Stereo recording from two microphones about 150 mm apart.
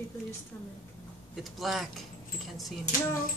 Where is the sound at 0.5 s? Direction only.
15° left (ahead or behind).